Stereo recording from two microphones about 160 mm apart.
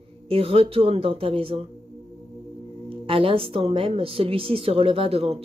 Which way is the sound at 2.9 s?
35° right (ahead or behind).